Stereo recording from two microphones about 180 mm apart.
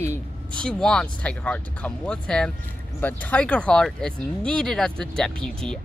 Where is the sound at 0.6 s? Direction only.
5° left (ahead or behind).